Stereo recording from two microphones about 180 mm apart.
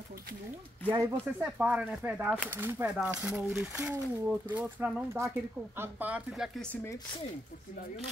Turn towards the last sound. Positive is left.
turn(degrees=15)  # may be behind; listen again after turning